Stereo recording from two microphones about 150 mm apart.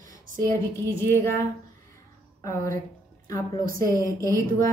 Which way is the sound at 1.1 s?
15° left (ahead or behind).